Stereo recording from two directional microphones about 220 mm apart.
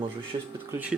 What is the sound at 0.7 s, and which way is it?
Speech, 5° right (ahead or behind).